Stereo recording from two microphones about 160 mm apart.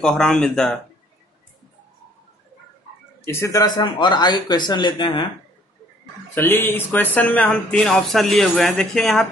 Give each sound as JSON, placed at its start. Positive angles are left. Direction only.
{"t": 0.0, "sound": "speech", "side_deg": 5}
{"t": 3.3, "sound": "speech", "side_deg": 15}
{"t": 6.3, "sound": "speech", "side_deg": 15}